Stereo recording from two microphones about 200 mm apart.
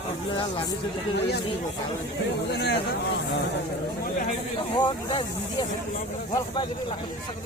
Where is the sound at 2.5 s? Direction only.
55° left (ahead or behind).